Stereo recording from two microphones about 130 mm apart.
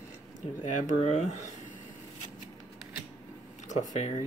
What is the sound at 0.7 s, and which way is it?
Speech, 70° left (ahead or behind).